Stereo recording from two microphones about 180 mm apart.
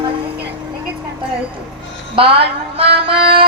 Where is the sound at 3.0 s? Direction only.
30° right (ahead or behind).